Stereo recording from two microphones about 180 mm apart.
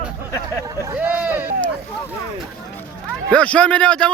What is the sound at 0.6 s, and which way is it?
Speech, 20° right (ahead or behind).